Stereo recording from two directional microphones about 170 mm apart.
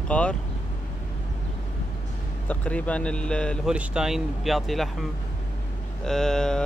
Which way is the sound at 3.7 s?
5° right (ahead or behind).